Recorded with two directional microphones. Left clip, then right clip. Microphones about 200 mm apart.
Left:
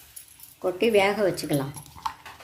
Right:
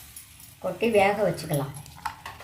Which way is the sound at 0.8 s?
45° left (ahead or behind).